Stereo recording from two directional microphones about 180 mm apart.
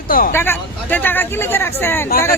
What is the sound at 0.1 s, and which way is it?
Speech, 55° left (ahead or behind).